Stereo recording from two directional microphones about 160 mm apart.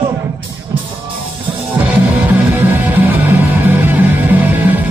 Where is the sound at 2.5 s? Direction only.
10° right (ahead or behind).